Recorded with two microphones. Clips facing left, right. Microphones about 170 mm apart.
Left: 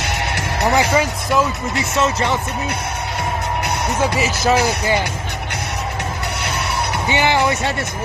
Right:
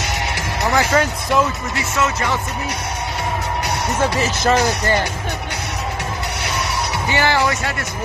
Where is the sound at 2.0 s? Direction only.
30° left (ahead or behind).